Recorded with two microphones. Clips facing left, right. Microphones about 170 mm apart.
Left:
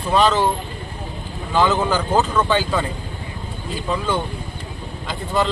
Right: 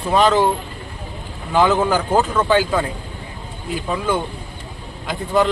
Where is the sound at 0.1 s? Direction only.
15° right (ahead or behind).